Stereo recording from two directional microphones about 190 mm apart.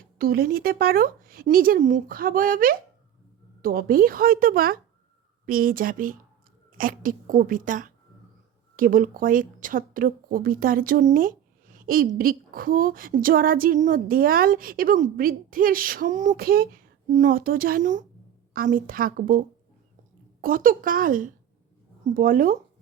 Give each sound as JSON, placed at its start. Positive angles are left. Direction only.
{"t": 0.2, "sound": "a woman's voice", "side_deg": -50}